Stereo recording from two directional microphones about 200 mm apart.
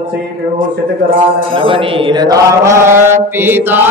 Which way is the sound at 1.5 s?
25° right (ahead or behind).